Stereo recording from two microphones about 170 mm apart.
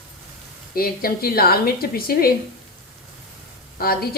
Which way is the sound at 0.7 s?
60° left (ahead or behind).